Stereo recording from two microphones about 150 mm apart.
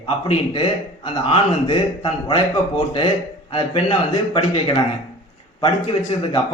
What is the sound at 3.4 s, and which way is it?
Speech, 35° left (ahead or behind).